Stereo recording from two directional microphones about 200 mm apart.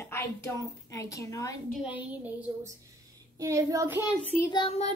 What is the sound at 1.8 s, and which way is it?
Child singing, 10° right (ahead or behind).